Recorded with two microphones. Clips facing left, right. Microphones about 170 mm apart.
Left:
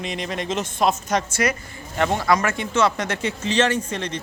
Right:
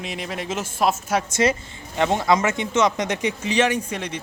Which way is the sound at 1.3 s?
25° right (ahead or behind).